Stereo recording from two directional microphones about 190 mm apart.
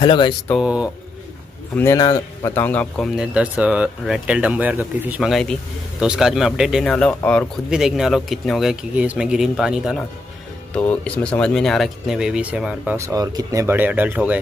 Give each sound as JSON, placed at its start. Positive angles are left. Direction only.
{"t": 0.0, "sound": "speech", "side_deg": 25}
{"t": 0.6, "sound": "speech", "side_deg": -5}
{"t": 1.8, "sound": "speech", "side_deg": 15}
{"t": 3.2, "sound": "speech", "side_deg": -5}